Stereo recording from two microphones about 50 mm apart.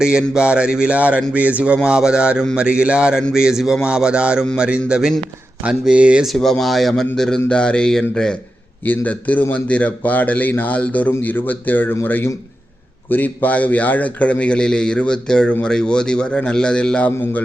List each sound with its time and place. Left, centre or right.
0.0 s a sound: centre
3.3 s speech: centre
3.8 s a sound: centre
4.5 s speech: centre
5.8 s a sound: right
6.2 s a man's voice: centre
8.8 s speech: left
10.8 s a man's voice: left
13.1 s a man's voice: left